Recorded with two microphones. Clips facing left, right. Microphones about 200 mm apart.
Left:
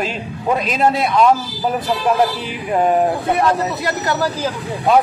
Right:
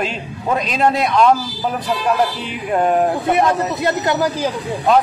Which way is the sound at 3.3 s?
20° right (ahead or behind).